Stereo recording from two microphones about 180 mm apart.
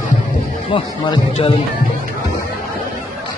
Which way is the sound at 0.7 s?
30° left (ahead or behind).